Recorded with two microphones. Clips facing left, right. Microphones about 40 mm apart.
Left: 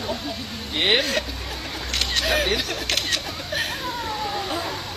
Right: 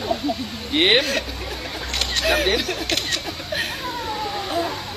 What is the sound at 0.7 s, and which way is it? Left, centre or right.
Speech, right.